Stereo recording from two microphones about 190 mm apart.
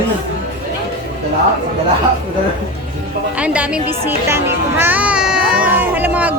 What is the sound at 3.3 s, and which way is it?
A woman's voice, 5° right (ahead or behind).